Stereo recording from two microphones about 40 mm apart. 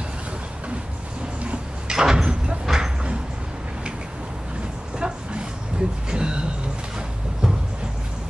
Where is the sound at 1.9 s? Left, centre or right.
Centre.